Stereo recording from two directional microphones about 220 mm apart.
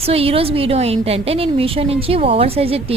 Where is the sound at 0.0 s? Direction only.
25° right (ahead or behind).